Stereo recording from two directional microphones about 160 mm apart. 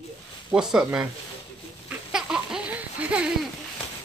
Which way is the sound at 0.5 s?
5° right (ahead or behind).